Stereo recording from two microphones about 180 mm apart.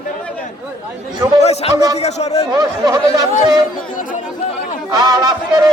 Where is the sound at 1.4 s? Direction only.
35° left (ahead or behind).